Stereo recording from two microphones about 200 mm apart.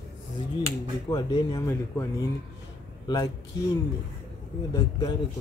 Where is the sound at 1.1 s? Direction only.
20° left (ahead or behind).